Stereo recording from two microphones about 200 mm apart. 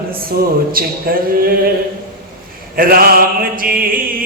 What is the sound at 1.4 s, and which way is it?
Mantra, 50° right (ahead or behind).